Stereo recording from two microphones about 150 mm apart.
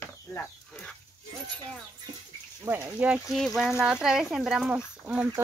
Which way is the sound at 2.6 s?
15° right (ahead or behind).